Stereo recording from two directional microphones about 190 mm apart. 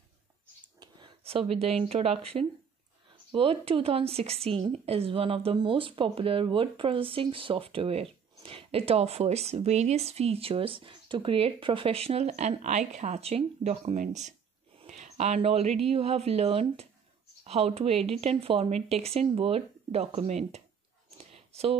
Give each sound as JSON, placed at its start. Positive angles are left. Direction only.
{"t": 0.7, "sound": "a woman's voice", "side_deg": -25}
{"t": 21.2, "sound": "clicking", "side_deg": -30}